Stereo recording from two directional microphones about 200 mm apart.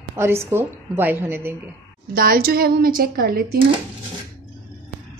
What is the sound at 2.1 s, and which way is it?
Speech, 50° right (ahead or behind).